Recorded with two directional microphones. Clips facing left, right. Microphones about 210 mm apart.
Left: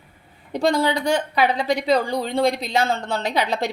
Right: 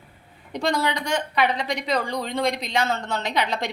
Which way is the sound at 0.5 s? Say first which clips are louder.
Left 5 dB; 30° left (ahead or behind).